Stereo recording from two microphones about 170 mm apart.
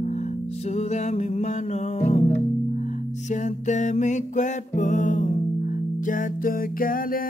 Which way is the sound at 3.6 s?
45° left (ahead or behind).